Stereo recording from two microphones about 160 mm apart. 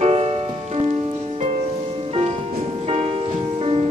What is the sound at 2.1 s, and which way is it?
Music, 40° right (ahead or behind).